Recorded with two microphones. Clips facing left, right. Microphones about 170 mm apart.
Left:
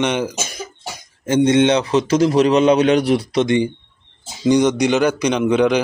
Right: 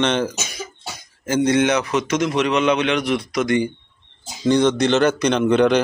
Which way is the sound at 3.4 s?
20° left (ahead or behind).